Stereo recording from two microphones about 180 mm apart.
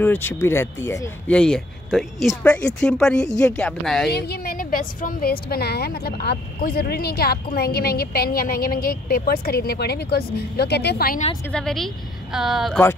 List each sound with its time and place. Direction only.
0.0 s speech: 10° left (ahead or behind)
4.1 s a woman's voice: 60° left (ahead or behind)
11.5 s speech: centre (ahead or behind)